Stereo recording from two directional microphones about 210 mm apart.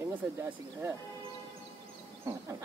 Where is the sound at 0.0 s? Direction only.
10° right (ahead or behind).